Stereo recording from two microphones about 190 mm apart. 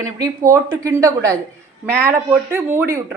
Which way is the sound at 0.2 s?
15° right (ahead or behind).